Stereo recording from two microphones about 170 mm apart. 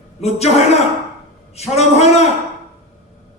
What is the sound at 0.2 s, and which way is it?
A man's voice, 40° left (ahead or behind).